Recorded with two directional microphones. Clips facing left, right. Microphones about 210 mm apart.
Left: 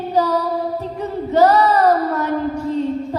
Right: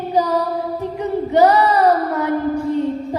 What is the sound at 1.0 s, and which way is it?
Child singing, 15° right (ahead or behind).